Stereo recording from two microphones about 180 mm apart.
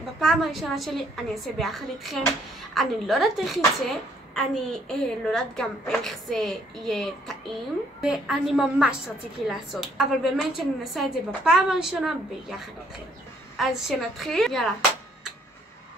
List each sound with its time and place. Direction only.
0.2 s a woman's voice: centre (ahead or behind)